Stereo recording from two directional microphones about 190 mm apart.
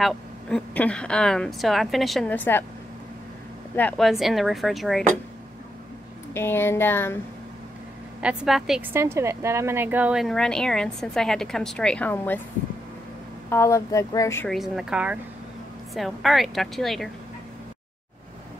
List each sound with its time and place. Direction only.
0.0 s a woman's voice: 5° left (ahead or behind)
3.7 s speech: 10° left (ahead or behind)
4.1 s a woman's voice: centre (ahead or behind)
6.3 s speech: 10° left (ahead or behind)
8.2 s a woman's voice: 5° right (ahead or behind)
13.5 s speech: 15° left (ahead or behind)
14.5 s a woman's voice: centre (ahead or behind)